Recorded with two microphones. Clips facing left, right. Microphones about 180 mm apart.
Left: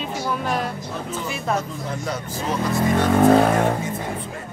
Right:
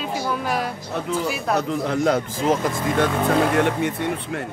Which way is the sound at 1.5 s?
70° right (ahead or behind).